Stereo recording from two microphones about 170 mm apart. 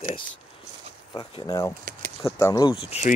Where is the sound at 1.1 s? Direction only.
25° left (ahead or behind).